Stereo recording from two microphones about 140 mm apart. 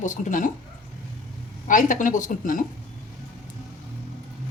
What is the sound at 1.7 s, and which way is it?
Speech, 65° left (ahead or behind).